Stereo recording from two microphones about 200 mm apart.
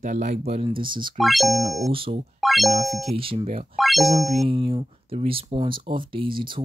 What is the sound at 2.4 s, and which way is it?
Music, centre (ahead or behind).